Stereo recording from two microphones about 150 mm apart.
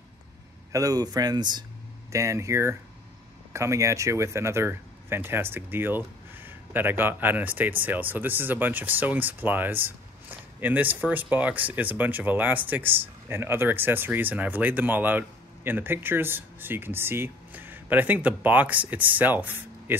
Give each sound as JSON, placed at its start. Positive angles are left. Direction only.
{"t": 0.7, "sound": "speech", "side_deg": -20}